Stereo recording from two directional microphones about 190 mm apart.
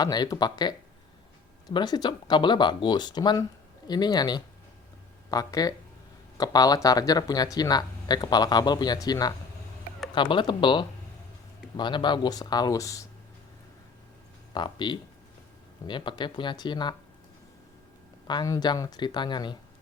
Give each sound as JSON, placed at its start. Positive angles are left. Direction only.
{"t": 0.0, "sound": "speech", "side_deg": 20}
{"t": 14.5, "sound": "speech", "side_deg": 25}
{"t": 18.3, "sound": "speech", "side_deg": 20}